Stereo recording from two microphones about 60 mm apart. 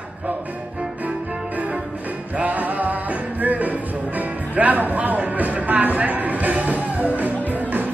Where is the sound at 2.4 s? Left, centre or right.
Right.